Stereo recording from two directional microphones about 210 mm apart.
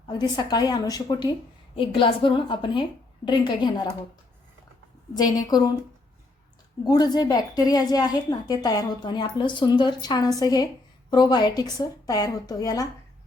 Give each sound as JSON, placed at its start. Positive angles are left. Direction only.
{"t": 0.1, "sound": "a woman's voice", "side_deg": 20}
{"t": 5.1, "sound": "a woman's voice", "side_deg": 20}
{"t": 6.8, "sound": "a woman's voice", "side_deg": 20}